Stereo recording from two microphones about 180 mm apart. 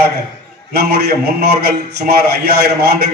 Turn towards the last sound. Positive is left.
turn(degrees=-60)  # may be behind; listen again after turning